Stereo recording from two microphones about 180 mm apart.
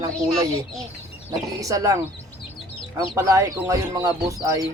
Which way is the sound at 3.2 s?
15° right (ahead or behind).